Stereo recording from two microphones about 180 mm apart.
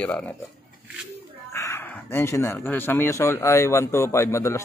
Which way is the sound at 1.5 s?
15° left (ahead or behind).